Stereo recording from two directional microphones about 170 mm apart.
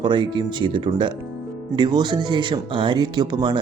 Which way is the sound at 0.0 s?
25° right (ahead or behind).